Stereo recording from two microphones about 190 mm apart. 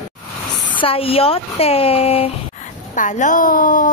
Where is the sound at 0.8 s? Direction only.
30° left (ahead or behind).